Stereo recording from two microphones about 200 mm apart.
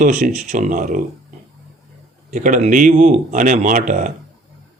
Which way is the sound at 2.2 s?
40° right (ahead or behind).